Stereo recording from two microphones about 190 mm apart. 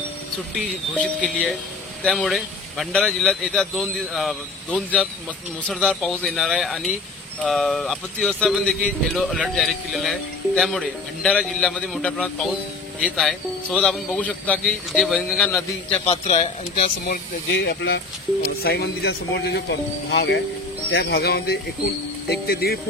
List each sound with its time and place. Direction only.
0.6 s speech: 5° right (ahead or behind)
2.0 s speech: 5° left (ahead or behind)
16.1 s speech: 30° left (ahead or behind)
17.1 s speech: 60° left (ahead or behind)